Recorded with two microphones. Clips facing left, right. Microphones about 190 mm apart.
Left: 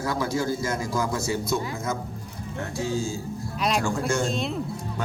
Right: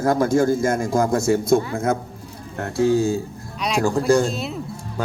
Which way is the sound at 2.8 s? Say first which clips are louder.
Right 11 dB; 60° right (ahead or behind).